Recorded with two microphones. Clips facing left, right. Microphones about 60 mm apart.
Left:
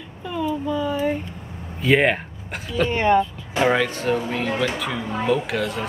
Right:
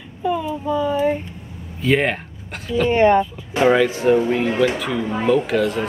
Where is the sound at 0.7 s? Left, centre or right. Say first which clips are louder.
Right 7 dB; centre.